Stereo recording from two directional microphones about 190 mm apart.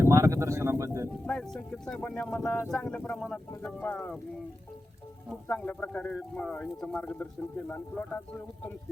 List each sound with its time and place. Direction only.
0.0 s speech: 15° right (ahead or behind)
1.3 s speech: 5° left (ahead or behind)
5.3 s speech: 5° left (ahead or behind)